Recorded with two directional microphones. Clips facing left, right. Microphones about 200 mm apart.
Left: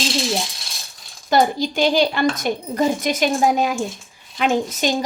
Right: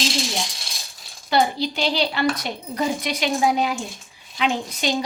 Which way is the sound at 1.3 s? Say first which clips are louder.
Left 3 dB; 45° left (ahead or behind).